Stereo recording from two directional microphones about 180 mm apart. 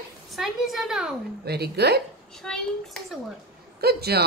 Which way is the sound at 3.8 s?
60° right (ahead or behind).